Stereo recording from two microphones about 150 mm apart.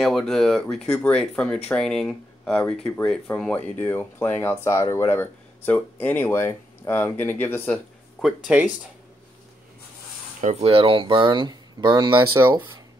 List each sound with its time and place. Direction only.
0.0 s speech: 5° left (ahead or behind)
8.2 s speech: 5° right (ahead or behind)
10.4 s speech: 45° right (ahead or behind); by 12.5 s 20° right (ahead or behind)